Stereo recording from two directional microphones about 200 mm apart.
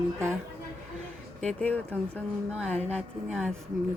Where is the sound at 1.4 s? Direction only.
5° left (ahead or behind).